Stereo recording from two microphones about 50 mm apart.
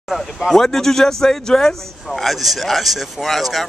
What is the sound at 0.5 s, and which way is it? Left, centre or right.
Speech, centre.